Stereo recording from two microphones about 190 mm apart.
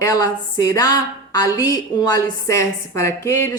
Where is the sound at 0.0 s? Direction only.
15° left (ahead or behind).